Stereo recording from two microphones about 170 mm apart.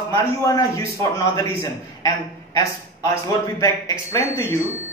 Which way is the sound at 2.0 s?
20° left (ahead or behind).